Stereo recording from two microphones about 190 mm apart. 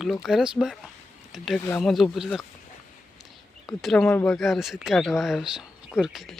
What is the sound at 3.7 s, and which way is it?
Speech, centre (ahead or behind).